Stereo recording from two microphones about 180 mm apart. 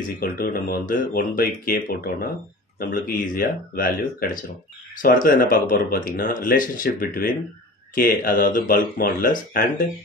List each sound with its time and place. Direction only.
0.2 s speech: 50° left (ahead or behind)